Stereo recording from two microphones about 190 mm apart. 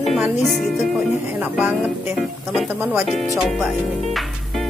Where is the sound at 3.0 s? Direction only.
Centre (ahead or behind).